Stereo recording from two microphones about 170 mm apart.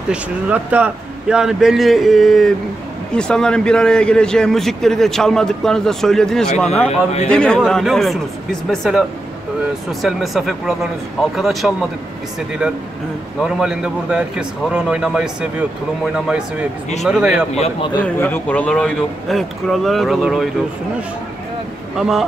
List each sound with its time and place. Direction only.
0.1 s a man's voice: 10° right (ahead or behind)
13.4 s a man's voice: 5° right (ahead or behind)
16.3 s a man's voice: 5° right (ahead or behind)
17.6 s a man's voice: 30° left (ahead or behind)
18.0 s a man's voice: 10° left (ahead or behind)
21.9 s speech: centre (ahead or behind)